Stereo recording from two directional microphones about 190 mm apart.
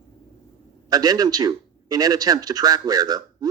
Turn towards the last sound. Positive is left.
turn(degrees=-20)  # may be behind; listen again after turning